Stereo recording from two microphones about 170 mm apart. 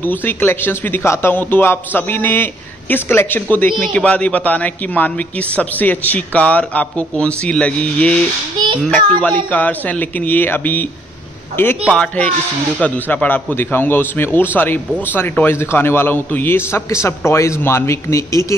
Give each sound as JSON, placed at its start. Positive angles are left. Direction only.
{"t": 0.0, "sound": "a man's voice", "side_deg": 10}
{"t": 9.5, "sound": "a man's voice", "side_deg": 10}